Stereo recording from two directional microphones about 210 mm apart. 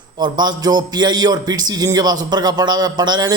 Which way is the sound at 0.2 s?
20° right (ahead or behind).